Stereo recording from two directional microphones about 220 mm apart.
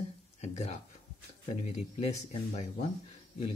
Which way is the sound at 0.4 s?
30° left (ahead or behind).